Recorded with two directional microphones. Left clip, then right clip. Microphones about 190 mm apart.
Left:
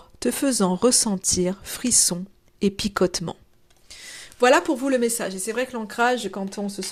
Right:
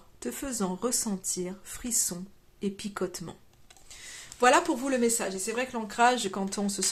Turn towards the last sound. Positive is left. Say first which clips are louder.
# left 2 dB
turn(degrees=10)  # may be behind; listen again after turning